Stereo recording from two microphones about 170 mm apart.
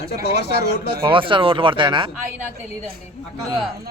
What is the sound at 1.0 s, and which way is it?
Speech, 30° right (ahead or behind).